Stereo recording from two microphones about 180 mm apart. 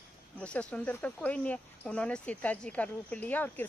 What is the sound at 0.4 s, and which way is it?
Speech, 5° left (ahead or behind).